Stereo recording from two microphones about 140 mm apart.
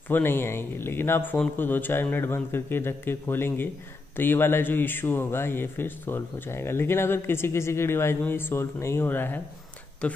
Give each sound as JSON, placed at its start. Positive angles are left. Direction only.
{"t": 0.1, "sound": "speech", "side_deg": 15}